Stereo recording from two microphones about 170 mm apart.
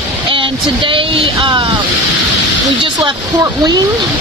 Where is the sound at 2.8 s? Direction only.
25° right (ahead or behind).